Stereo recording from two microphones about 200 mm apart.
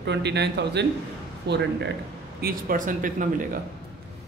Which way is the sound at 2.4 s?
45° right (ahead or behind).